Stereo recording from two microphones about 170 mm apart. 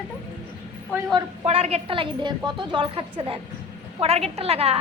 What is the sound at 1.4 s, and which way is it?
A woman's voice, 35° right (ahead or behind).